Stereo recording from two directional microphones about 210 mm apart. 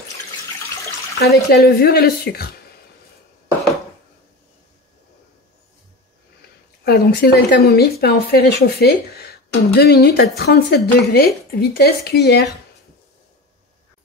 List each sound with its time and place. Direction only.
1.2 s speech: 50° left (ahead or behind)
6.8 s speech: 50° left (ahead or behind)